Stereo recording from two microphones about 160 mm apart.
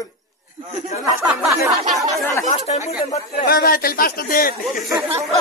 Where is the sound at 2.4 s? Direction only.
45° left (ahead or behind).